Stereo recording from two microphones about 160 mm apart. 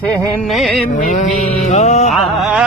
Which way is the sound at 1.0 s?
50° left (ahead or behind).